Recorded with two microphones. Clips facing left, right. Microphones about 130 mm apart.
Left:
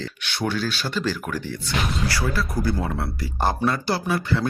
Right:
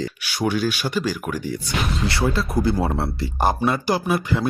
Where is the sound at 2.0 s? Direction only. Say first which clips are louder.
Right 3 dB; 25° right (ahead or behind).